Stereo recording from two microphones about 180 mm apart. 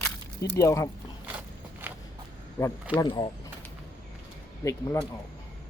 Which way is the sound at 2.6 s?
10° left (ahead or behind).